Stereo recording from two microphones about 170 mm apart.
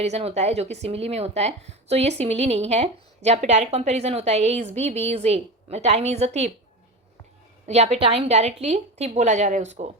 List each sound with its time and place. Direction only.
0.0 s speech: 40° right (ahead or behind)
7.7 s speech: 40° right (ahead or behind)